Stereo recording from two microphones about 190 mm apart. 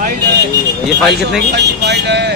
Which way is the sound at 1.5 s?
60° right (ahead or behind).